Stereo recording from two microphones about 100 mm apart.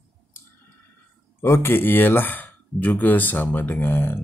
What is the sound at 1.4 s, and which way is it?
Speech, 25° left (ahead or behind).